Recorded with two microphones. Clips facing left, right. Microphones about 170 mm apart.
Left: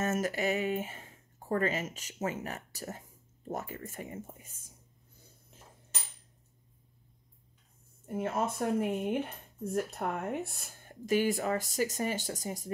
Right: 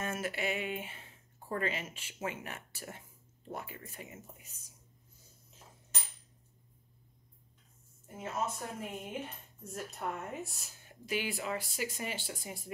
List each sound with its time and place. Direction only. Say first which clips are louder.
0.0 s speech: left 6 dB; 40° left (ahead or behind)
8.1 s speech: left 5 dB; 55° left (ahead or behind)